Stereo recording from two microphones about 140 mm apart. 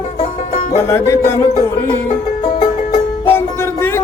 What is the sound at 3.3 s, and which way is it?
Music, 15° left (ahead or behind).